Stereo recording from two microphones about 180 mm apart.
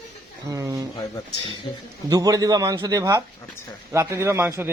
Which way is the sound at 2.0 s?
20° right (ahead or behind).